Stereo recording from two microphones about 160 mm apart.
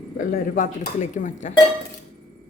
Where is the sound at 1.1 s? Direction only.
55° left (ahead or behind).